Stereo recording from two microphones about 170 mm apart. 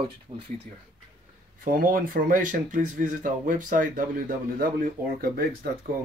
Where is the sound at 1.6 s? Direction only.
55° right (ahead or behind).